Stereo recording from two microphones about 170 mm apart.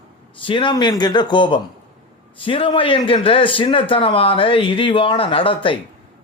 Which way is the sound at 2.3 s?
30° left (ahead or behind).